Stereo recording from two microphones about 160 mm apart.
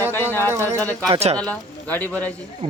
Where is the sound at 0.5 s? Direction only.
20° right (ahead or behind).